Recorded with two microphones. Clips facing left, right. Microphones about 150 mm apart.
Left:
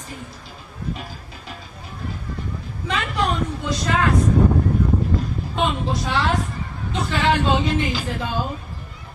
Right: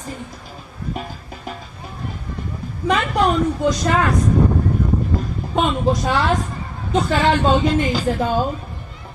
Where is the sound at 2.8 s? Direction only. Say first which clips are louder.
Right 7 dB; 45° right (ahead or behind).